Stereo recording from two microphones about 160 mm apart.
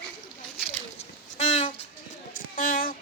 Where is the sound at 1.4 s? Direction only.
45° left (ahead or behind).